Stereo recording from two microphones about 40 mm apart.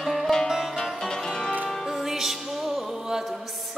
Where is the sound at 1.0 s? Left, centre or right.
Centre.